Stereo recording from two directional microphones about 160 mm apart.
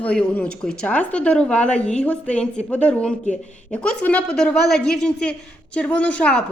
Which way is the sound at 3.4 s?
45° left (ahead or behind).